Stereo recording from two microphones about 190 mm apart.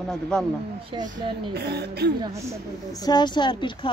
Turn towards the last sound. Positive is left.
turn(degrees=25)  # may be behind; listen again after turning